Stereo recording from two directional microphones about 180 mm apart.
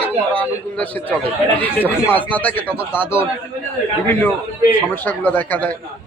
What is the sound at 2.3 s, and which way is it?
Speech, 10° left (ahead or behind).